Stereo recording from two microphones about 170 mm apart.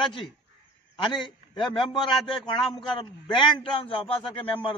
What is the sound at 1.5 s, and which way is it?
A man's voice, 30° left (ahead or behind).